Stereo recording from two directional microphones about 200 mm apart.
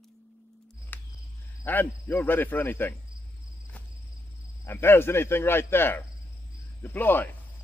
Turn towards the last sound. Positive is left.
turn(degrees=10)  # may be behind; listen again after turning